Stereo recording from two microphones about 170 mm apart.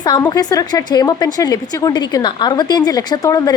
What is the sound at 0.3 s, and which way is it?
Speech, 25° left (ahead or behind).